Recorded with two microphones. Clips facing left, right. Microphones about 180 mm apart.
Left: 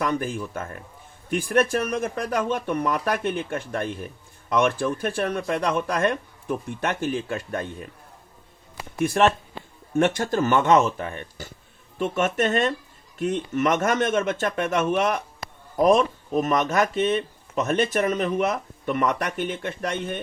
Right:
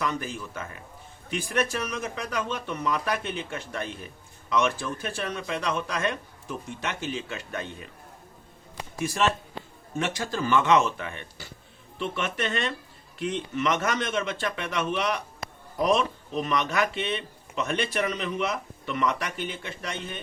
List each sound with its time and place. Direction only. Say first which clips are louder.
0.0 s speech: left 5 dB; 55° left (ahead or behind)
9.0 s speech: left 6 dB; 55° left (ahead or behind)